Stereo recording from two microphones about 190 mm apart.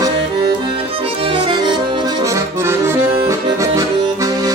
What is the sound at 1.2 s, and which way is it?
Accordion, 25° right (ahead or behind).